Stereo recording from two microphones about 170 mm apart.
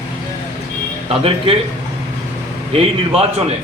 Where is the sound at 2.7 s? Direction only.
35° right (ahead or behind).